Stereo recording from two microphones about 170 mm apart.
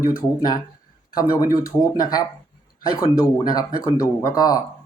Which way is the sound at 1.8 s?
20° left (ahead or behind).